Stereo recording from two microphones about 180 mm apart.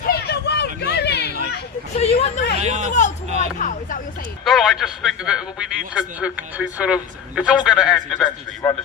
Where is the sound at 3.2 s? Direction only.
35° right (ahead or behind).